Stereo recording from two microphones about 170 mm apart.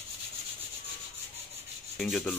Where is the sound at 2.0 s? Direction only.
Centre (ahead or behind).